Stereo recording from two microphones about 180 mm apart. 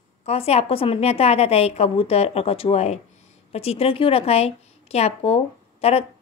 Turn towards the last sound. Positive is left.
turn(degrees=35)  # may be behind; listen again after turning